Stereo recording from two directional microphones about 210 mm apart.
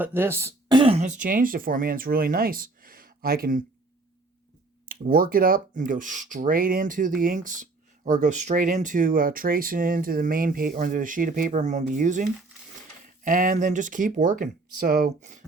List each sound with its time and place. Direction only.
0.0 s speech: 10° right (ahead or behind); by 3.6 s 45° right (ahead or behind)
4.9 s speech: 45° right (ahead or behind)